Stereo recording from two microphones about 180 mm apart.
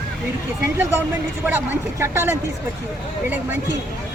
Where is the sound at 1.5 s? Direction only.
15° right (ahead or behind).